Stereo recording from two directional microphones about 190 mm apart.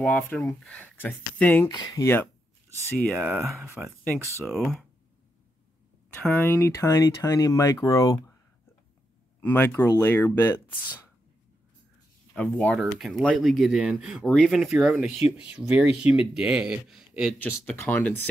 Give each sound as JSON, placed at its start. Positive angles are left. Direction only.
{"t": 0.0, "sound": "speech", "side_deg": 10}
{"t": 1.7, "sound": "speech", "side_deg": 20}
{"t": 3.2, "sound": "speech", "side_deg": -10}
{"t": 4.5, "sound": "speech", "side_deg": 0}
{"t": 6.2, "sound": "speech", "side_deg": 10}
{"t": 9.4, "sound": "speech", "side_deg": 10}
{"t": 12.4, "sound": "speech", "side_deg": 5}
{"t": 17.4, "sound": "speech", "side_deg": 10}